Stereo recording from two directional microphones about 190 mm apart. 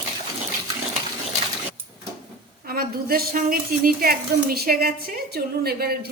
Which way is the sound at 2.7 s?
50° right (ahead or behind).